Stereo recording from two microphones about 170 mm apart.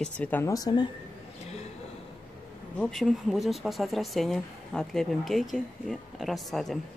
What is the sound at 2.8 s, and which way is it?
Speech, centre (ahead or behind).